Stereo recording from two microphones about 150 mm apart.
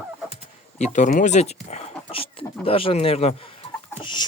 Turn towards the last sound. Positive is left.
turn(degrees=30)  # may be behind; listen again after turning